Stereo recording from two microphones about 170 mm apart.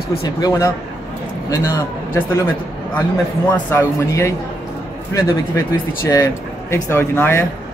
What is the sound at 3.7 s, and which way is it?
Speech, 15° left (ahead or behind).